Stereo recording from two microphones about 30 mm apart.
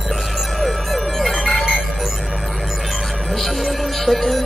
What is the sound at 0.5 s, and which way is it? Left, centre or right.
Music, centre.